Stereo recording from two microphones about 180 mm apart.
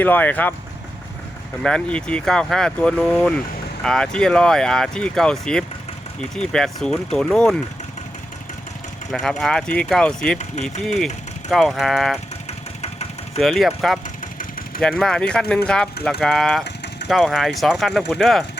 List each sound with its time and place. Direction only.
0.0 s speech: 10° left (ahead or behind)
1.6 s speech: 5° left (ahead or behind)
9.1 s speech: centre (ahead or behind)
12.5 s engine: 35° left (ahead or behind)
13.4 s speech: centre (ahead or behind)